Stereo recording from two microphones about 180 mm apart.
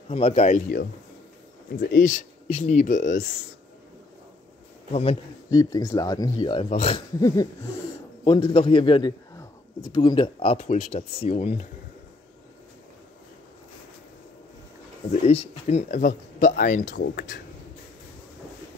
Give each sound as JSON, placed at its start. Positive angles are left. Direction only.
{"t": 0.1, "sound": "speech", "side_deg": 35}
{"t": 1.7, "sound": "speech", "side_deg": 55}
{"t": 4.9, "sound": "speech", "side_deg": 30}
{"t": 5.5, "sound": "a man's voice", "side_deg": 20}
{"t": 7.2, "sound": "a sound", "side_deg": 20}
{"t": 8.2, "sound": "a man's voice", "side_deg": 25}
{"t": 15.2, "sound": "speech", "side_deg": 35}
{"t": 17.0, "sound": "speech", "side_deg": 65}